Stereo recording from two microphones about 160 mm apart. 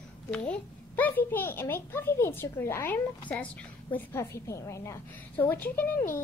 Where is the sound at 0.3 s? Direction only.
10° left (ahead or behind).